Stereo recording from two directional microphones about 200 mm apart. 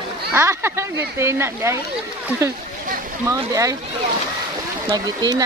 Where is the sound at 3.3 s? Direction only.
15° right (ahead or behind).